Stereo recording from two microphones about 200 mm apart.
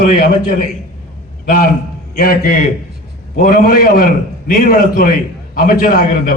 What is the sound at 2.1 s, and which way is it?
A man's voice, 45° left (ahead or behind).